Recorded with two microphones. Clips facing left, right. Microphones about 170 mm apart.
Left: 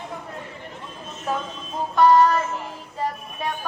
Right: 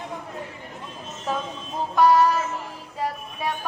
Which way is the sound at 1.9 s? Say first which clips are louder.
Left 2 dB; 10° right (ahead or behind).